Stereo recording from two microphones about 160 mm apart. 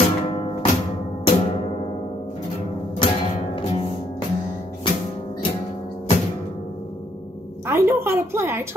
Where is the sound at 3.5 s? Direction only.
40° left (ahead or behind).